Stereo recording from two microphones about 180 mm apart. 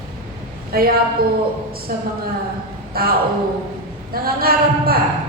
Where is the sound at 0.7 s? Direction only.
55° right (ahead or behind).